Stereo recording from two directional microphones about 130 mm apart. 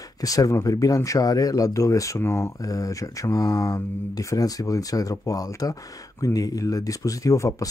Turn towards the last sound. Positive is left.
turn(degrees=25)  # may be behind; listen again after turning